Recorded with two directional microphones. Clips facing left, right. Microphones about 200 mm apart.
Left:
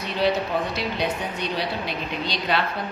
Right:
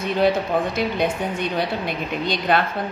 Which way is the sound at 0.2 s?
50° right (ahead or behind).